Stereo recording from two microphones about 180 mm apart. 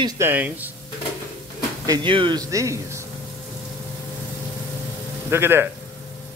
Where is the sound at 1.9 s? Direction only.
25° right (ahead or behind).